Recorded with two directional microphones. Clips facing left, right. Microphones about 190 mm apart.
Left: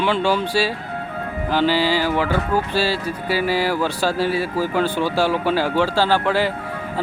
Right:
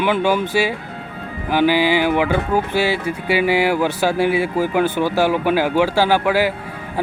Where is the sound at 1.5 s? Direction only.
15° right (ahead or behind).